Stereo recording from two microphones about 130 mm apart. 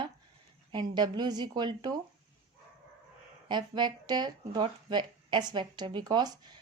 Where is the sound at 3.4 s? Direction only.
35° right (ahead or behind).